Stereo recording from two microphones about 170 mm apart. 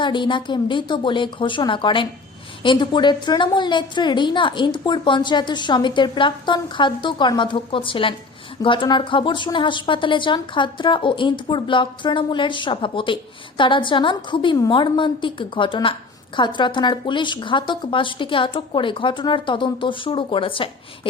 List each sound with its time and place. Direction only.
0.0 s a woman's voice: 30° left (ahead or behind)